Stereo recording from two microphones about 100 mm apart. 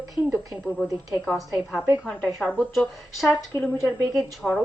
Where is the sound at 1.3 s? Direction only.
Centre (ahead or behind).